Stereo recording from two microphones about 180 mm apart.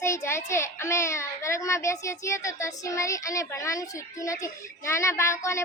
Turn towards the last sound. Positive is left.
turn(degrees=15)  # may be behind; listen again after turning